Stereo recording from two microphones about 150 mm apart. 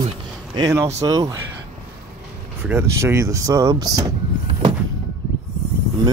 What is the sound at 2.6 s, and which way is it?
Speech, 15° right (ahead or behind).